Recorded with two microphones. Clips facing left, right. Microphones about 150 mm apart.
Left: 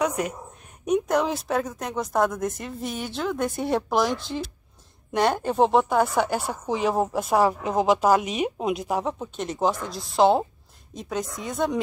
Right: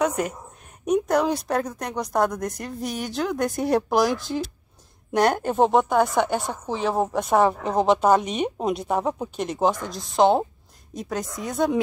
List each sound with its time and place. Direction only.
0.0 s a woman's voice: centre (ahead or behind)